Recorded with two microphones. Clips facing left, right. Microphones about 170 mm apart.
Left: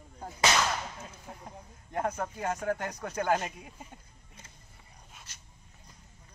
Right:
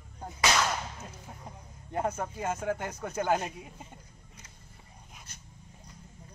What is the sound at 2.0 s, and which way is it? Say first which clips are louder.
Speech: right 1 dB; 10° right (ahead or behind).